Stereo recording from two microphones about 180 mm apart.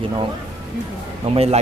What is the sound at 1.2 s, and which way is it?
Speech, 35° right (ahead or behind).